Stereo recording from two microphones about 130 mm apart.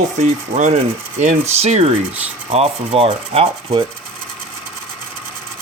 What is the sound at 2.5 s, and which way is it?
Rub, 50° right (ahead or behind).